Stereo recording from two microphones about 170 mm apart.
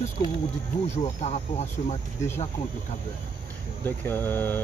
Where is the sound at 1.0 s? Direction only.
40° left (ahead or behind).